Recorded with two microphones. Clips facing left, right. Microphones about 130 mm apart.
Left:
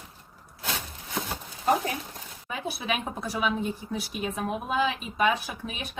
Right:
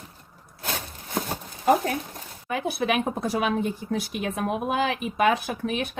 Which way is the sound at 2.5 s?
60° right (ahead or behind).